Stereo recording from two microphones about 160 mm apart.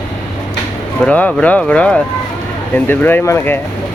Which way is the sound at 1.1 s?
10° left (ahead or behind).